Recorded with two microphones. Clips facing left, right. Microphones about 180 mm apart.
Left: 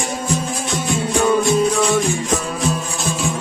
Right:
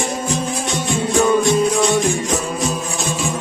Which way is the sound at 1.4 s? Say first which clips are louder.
Right 1 dB; centre (ahead or behind).